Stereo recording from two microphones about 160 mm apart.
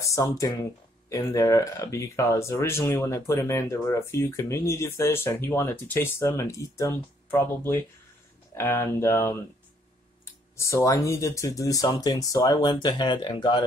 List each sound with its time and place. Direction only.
0.0 s speech: 20° left (ahead or behind)
10.5 s speech: 20° left (ahead or behind)